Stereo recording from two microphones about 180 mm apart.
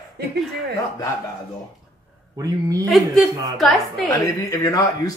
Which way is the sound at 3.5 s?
Centre (ahead or behind).